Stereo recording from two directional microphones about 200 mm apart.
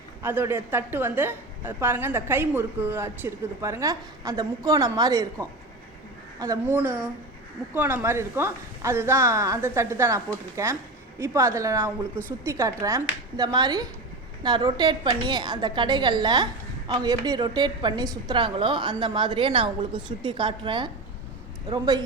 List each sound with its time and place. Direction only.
0.2 s a woman's voice: 10° right (ahead or behind)
7.7 s a woman's voice: 10° right (ahead or behind)